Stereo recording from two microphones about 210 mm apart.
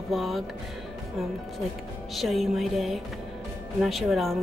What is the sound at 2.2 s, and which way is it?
Speech, centre (ahead or behind).